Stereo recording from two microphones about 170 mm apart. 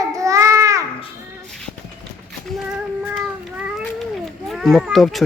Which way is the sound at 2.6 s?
5° right (ahead or behind).